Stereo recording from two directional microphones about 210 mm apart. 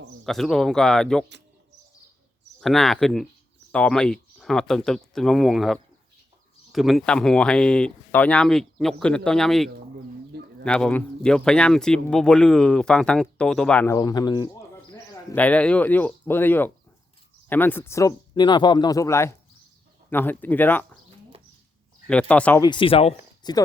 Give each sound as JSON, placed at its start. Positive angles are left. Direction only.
{"t": 0.3, "sound": "speech", "side_deg": 0}
{"t": 2.6, "sound": "speech", "side_deg": 0}
{"t": 15.4, "sound": "speech", "side_deg": 5}
{"t": 22.0, "sound": "speech", "side_deg": 5}
{"t": 22.6, "sound": "speech", "side_deg": 25}